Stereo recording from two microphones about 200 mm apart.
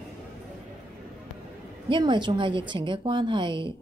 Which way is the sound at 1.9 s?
25° right (ahead or behind).